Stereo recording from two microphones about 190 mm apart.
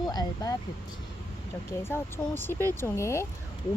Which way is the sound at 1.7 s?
15° left (ahead or behind).